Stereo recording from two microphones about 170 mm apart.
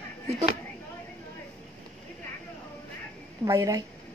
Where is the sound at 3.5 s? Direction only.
20° right (ahead or behind).